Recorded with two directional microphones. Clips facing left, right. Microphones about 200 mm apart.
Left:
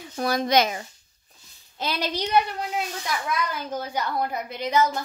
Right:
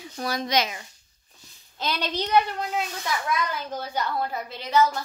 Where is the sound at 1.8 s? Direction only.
10° left (ahead or behind).